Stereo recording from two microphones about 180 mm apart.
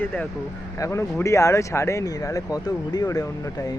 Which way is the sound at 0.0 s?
10° left (ahead or behind).